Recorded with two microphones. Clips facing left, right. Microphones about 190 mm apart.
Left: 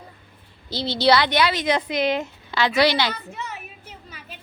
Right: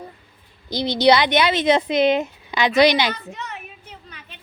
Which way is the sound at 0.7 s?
15° right (ahead or behind).